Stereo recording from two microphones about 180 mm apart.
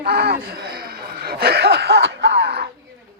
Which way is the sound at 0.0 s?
60° right (ahead or behind).